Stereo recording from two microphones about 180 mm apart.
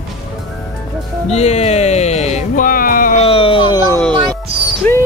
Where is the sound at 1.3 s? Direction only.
35° left (ahead or behind).